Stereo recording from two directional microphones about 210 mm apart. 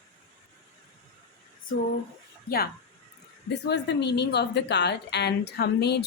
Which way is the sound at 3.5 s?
55° left (ahead or behind).